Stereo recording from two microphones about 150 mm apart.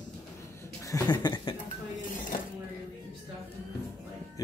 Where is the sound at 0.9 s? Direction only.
25° left (ahead or behind).